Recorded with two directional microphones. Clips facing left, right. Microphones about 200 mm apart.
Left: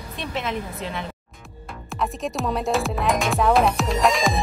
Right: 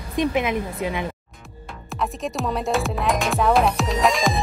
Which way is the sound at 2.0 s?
Centre (ahead or behind).